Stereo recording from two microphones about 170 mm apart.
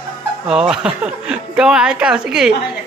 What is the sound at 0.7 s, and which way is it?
Speech, 5° right (ahead or behind).